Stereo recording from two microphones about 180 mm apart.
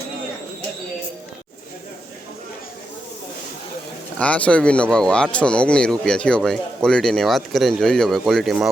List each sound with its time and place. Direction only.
4.2 s speech: 5° left (ahead or behind)